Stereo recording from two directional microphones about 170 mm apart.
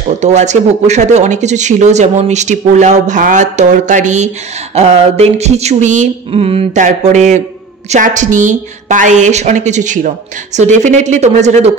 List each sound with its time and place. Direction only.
0.2 s speech: 40° right (ahead or behind)
4.7 s a sound: 40° right (ahead or behind)
6.8 s speech: 45° right (ahead or behind)